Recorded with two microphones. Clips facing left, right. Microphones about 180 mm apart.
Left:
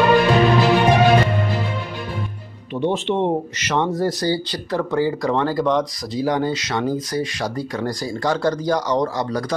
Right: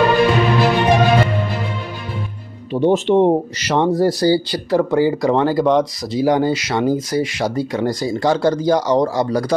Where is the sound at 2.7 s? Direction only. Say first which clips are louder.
Right 6 dB; 40° right (ahead or behind).